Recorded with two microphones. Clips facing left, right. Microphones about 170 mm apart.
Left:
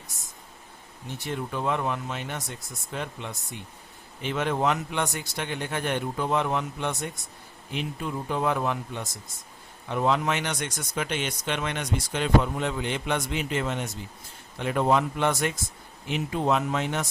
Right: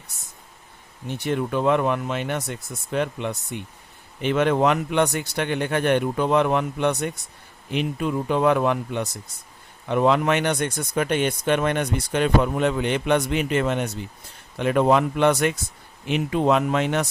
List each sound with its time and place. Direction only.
1.0 s speech: 65° right (ahead or behind)